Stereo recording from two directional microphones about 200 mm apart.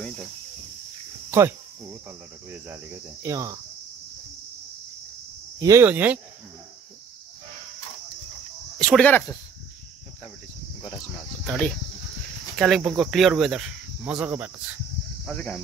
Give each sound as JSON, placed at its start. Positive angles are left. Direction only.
{"t": 1.3, "sound": "speech", "side_deg": -15}
{"t": 5.6, "sound": "speech", "side_deg": -15}
{"t": 8.7, "sound": "speech", "side_deg": 5}
{"t": 11.4, "sound": "speech", "side_deg": 5}